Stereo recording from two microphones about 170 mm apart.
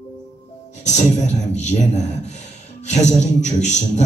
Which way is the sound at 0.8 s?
45° left (ahead or behind).